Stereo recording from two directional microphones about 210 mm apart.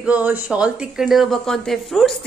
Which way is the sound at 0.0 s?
5° right (ahead or behind).